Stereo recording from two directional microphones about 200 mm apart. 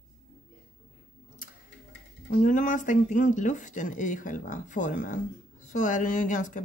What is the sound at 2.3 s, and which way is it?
Speech, 40° left (ahead or behind).